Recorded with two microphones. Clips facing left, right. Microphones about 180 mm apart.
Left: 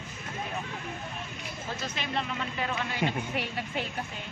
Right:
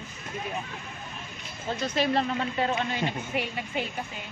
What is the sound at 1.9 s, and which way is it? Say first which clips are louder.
Speech: right 10 dB; 35° right (ahead or behind).